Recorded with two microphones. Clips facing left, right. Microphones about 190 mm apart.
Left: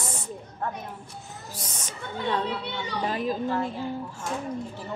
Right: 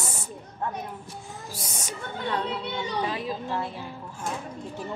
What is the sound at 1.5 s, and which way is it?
Speech, 10° right (ahead or behind).